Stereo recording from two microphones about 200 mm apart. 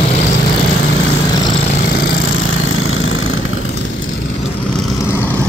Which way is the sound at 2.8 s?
90° left.